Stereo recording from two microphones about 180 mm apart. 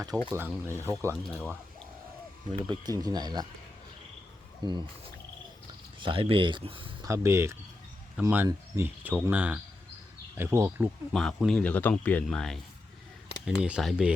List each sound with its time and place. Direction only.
0.1 s speech: 20° right (ahead or behind)
1.1 s a man's voice: centre (ahead or behind)
2.6 s speech: 25° right (ahead or behind)
4.6 s speech: 25° right (ahead or behind)
6.0 s speech: 30° right (ahead or behind)
7.1 s speech: 15° right (ahead or behind)
11.1 s a man's voice: centre (ahead or behind)